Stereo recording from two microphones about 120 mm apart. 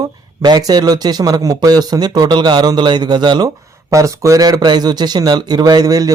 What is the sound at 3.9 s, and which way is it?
Speech, 25° right (ahead or behind).